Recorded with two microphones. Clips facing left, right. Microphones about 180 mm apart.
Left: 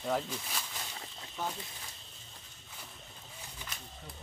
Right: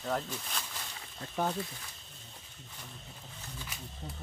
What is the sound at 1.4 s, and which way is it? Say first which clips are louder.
Speech: right 6 dB; 50° right (ahead or behind).